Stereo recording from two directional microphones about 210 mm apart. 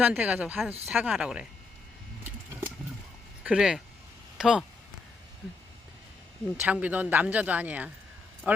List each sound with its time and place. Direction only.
0.0 s speech: 5° right (ahead or behind)
3.4 s speech: 5° right (ahead or behind)
6.6 s speech: 5° right (ahead or behind)